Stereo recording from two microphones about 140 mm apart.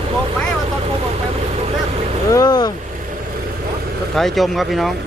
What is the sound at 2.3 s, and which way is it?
Speech, 30° left (ahead or behind).